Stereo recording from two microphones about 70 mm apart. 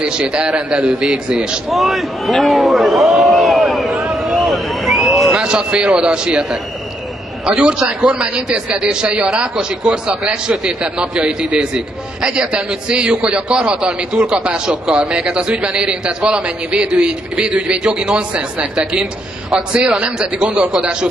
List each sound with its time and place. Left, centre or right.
0.0 s a man's voice: centre
5.4 s a man's voice: centre